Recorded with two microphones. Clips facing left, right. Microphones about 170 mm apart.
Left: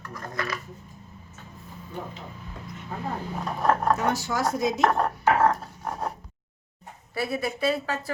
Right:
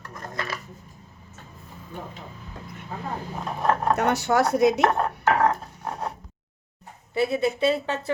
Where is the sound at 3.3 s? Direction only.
5° right (ahead or behind).